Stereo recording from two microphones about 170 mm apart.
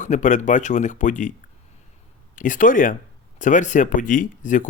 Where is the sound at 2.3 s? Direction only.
50° left (ahead or behind).